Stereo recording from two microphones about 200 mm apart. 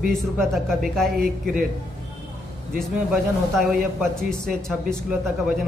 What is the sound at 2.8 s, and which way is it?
A man's voice, centre (ahead or behind).